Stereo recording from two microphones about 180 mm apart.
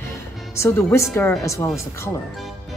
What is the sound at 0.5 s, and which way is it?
A woman's voice, 15° left (ahead or behind).